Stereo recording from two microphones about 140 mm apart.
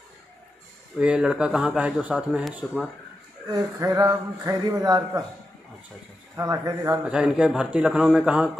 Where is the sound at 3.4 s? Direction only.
25° right (ahead or behind).